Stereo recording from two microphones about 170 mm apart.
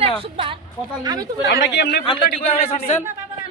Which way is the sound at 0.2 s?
30° right (ahead or behind).